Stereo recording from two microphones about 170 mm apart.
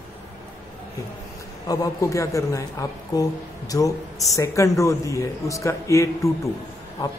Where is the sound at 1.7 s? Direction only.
20° left (ahead or behind).